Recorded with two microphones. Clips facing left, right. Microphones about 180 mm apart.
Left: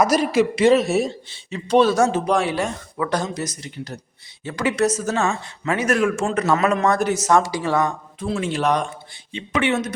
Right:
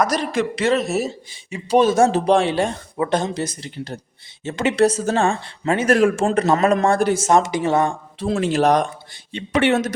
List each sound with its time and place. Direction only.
0.0 s speech: 10° left (ahead or behind)
0.9 s speech: centre (ahead or behind)
1.3 s speech: 10° right (ahead or behind)
2.0 s speech: 35° right (ahead or behind)
8.3 s speech: 40° right (ahead or behind)